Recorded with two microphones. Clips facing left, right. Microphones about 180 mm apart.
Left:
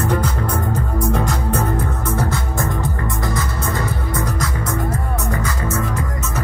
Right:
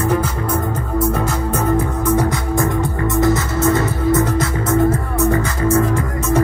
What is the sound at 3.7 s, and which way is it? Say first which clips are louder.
Music: right 7 dB; 25° right (ahead or behind).